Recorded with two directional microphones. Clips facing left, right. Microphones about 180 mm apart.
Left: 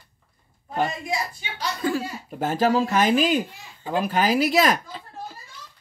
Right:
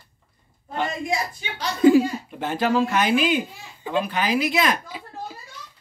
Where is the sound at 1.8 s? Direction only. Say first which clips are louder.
Right 12 dB; 15° right (ahead or behind).